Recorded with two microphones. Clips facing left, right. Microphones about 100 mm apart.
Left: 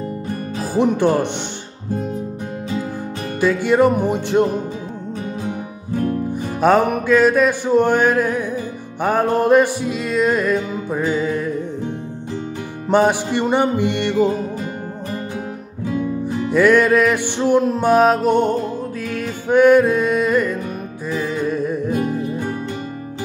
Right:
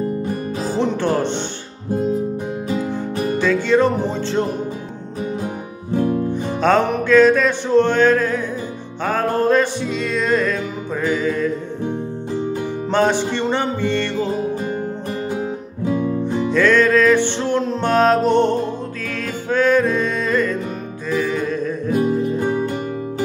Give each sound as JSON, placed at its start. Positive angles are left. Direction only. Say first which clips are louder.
{"t": 0.7, "sound": "music", "louder": "left 4 dB", "side_deg": 15}
{"t": 3.3, "sound": "music", "louder": "left 1 dB", "side_deg": 10}
{"t": 6.3, "sound": "music", "louder": "left 3 dB", "side_deg": 10}
{"t": 12.9, "sound": "music", "louder": "left 2 dB", "side_deg": 10}
{"t": 15.8, "sound": "music", "louder": "right 2 dB", "side_deg": -20}
{"t": 16.3, "sound": "music", "louder": "left 3 dB", "side_deg": 10}
{"t": 21.9, "sound": "music", "louder": "right 3 dB", "side_deg": -20}